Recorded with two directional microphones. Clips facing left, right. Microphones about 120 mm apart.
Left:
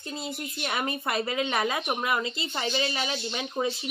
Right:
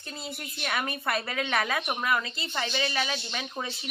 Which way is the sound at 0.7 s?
20° left (ahead or behind).